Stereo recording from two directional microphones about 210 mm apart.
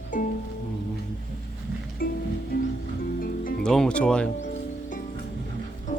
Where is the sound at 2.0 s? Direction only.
45° left (ahead or behind).